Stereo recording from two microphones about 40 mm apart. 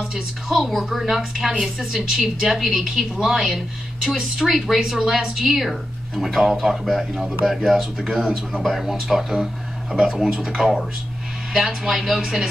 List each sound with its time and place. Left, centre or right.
0.1 s a woman's voice: centre
8.1 s a woman's voice: centre
8.6 s a woman's voice: centre